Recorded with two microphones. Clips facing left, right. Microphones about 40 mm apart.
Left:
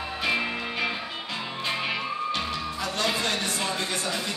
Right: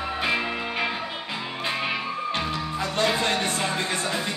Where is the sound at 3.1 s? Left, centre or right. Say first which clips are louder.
Right 3 dB; right.